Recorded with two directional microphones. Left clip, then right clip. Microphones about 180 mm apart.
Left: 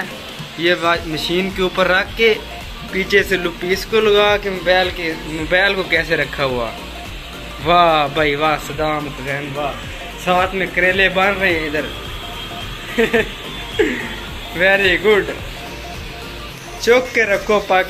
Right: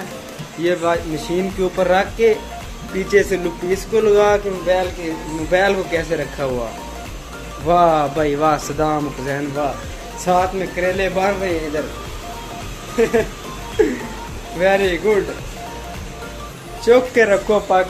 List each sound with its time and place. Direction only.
0.6 s speech: 15° right (ahead or behind)
7.6 s speech: 15° right (ahead or behind)
10.2 s speech: 15° right (ahead or behind)
12.9 s speech: 5° right (ahead or behind)
13.8 s speech: 20° right (ahead or behind)
14.6 s speech: 5° right (ahead or behind)
16.8 s speech: 15° right (ahead or behind)